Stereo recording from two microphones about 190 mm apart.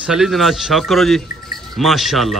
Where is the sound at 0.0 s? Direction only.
Centre (ahead or behind).